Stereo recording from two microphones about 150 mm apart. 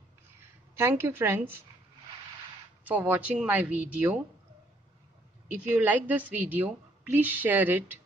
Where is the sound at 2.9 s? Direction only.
10° right (ahead or behind).